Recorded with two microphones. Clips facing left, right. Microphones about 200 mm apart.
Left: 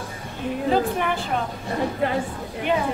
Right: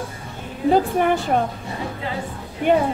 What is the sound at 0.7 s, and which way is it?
Speech, 45° right (ahead or behind).